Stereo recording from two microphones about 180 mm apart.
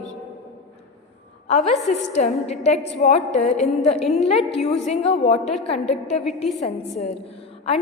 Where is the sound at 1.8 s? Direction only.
40° left (ahead or behind).